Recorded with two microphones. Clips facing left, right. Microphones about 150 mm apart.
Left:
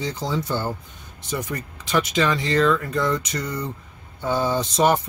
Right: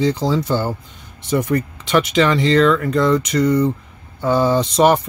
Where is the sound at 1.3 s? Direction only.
60° right (ahead or behind).